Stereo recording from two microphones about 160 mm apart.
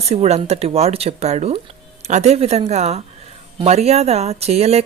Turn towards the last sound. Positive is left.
turn(degrees=-40)  # may be behind; listen again after turning